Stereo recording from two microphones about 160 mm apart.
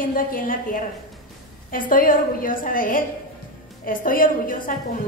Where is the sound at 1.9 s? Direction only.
60° left (ahead or behind).